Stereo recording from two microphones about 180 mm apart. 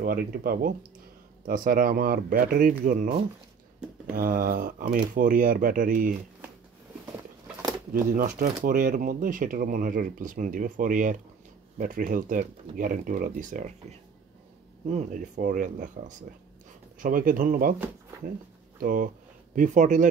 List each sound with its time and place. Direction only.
0.0 s speech: 55° right (ahead or behind)
7.9 s speech: 50° right (ahead or behind)
18.8 s speech: 50° right (ahead or behind)